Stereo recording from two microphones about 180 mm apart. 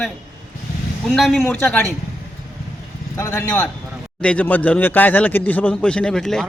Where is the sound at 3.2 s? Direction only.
15° left (ahead or behind).